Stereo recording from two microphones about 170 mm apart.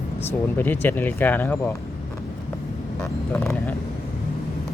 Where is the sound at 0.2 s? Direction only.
10° left (ahead or behind).